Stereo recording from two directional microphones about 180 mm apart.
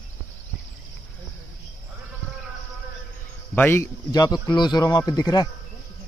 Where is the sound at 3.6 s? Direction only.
15° left (ahead or behind).